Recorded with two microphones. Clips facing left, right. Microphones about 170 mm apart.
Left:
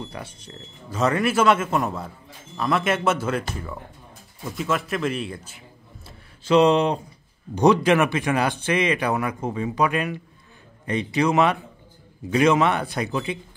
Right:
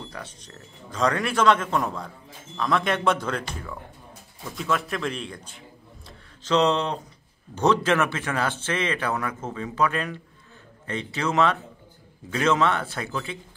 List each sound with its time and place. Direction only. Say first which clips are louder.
0.1 s a man's voice: left 3 dB; 10° left (ahead or behind)
4.5 s a man's voice: left 2 dB; centre (ahead or behind)
6.0 s a sound: left 5 dB; 10° left (ahead or behind)
7.5 s a man's voice: left 4 dB; 15° left (ahead or behind)